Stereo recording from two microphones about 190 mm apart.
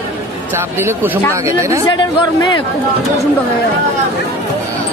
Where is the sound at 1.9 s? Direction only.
25° left (ahead or behind).